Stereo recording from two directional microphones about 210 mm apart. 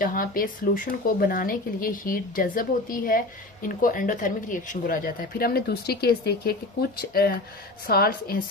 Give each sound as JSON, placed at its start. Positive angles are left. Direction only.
{"t": 0.0, "sound": "a woman's voice", "side_deg": 40}